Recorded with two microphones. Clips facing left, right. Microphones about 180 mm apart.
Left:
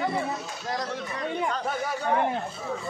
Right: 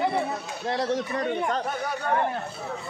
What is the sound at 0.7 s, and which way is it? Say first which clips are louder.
Speech: right 5 dB; 30° right (ahead or behind).